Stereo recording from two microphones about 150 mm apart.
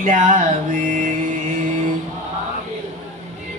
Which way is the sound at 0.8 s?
60° right (ahead or behind).